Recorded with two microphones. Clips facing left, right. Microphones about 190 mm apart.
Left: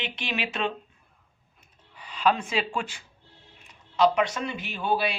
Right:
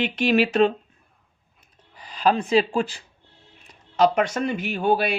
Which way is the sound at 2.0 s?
40° right (ahead or behind).